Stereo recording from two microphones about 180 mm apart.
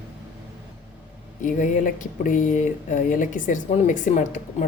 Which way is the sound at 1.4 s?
45° left (ahead or behind).